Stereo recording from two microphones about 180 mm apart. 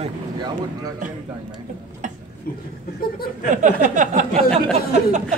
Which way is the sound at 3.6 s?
45° right (ahead or behind).